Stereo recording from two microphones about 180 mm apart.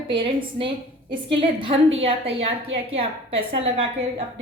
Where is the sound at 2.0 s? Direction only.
30° right (ahead or behind).